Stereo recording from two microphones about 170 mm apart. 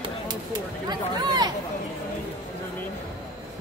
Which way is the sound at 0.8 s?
25° right (ahead or behind).